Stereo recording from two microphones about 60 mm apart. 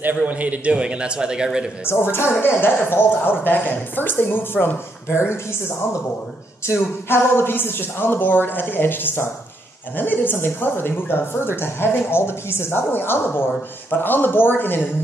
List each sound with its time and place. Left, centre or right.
0.0 s a man's voice: right; by 1.7 s centre
1.9 s speech: left
6.6 s speech: left